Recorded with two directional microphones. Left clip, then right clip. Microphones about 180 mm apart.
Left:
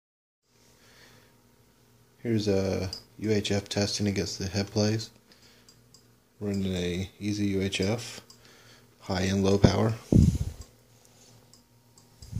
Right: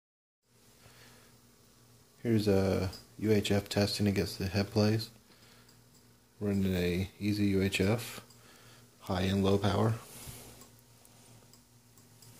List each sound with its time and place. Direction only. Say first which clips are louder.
2.2 s speech: left 2 dB; 5° left (ahead or behind)
6.4 s speech: left 1 dB; 5° left (ahead or behind)
8.5 s a sound: left 3 dB; 20° left (ahead or behind)